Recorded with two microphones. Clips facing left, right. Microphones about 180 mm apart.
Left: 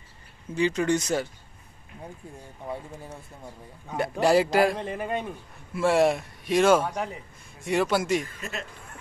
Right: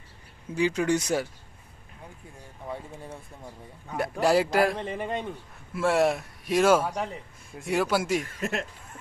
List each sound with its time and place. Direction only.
0.6 s speech: 10° right (ahead or behind)
3.9 s a man's voice: centre (ahead or behind)
8.3 s speech: 70° right (ahead or behind)